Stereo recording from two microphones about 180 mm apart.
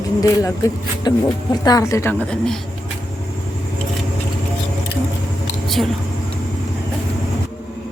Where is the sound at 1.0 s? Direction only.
20° left (ahead or behind).